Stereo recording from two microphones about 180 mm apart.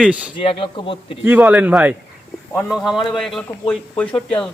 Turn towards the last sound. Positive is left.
turn(degrees=10)  # may be behind; listen again after turning